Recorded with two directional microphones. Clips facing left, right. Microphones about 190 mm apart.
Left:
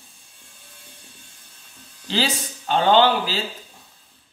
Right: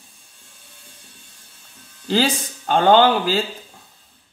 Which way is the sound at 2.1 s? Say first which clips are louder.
Right 5 dB; 45° right (ahead or behind).